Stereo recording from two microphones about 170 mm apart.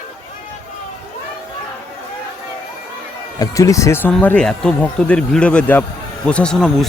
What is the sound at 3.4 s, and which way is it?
Speech, 20° left (ahead or behind).